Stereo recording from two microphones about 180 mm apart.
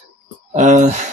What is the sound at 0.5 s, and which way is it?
Speech, 40° right (ahead or behind).